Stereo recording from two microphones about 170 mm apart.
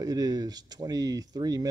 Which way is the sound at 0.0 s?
20° right (ahead or behind).